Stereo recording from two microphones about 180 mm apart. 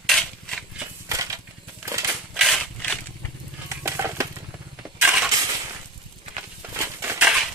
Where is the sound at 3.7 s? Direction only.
15° right (ahead or behind).